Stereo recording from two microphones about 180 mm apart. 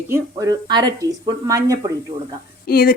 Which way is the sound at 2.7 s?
55° left (ahead or behind).